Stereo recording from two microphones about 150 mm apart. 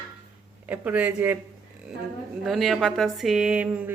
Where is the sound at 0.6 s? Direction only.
10° right (ahead or behind).